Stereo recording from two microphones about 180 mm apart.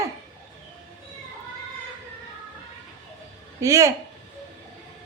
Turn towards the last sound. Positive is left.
turn(degrees=-15)  # may be behind; listen again after turning